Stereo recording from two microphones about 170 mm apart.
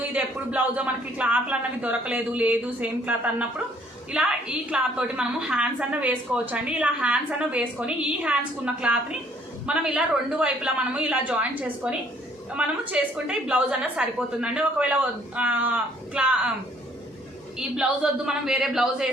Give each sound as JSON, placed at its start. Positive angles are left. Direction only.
{"t": 0.1, "sound": "a woman's voice", "side_deg": -5}
{"t": 17.6, "sound": "a man's voice", "side_deg": -5}